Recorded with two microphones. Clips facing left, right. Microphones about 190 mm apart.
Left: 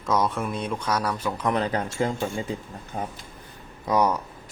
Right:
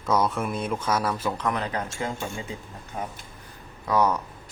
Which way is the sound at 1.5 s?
30° left (ahead or behind).